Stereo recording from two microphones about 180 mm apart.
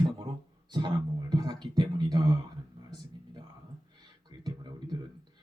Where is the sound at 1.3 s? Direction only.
25° right (ahead or behind).